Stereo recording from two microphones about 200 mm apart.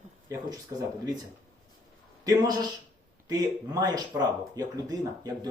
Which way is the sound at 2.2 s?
20° right (ahead or behind).